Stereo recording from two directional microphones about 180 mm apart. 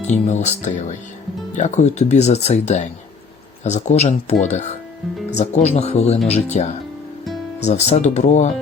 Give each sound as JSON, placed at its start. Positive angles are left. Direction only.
{"t": 0.0, "sound": "speech", "side_deg": 40}